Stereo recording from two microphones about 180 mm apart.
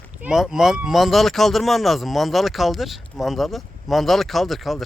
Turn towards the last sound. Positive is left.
turn(degrees=0)  # may be behind; listen again after turning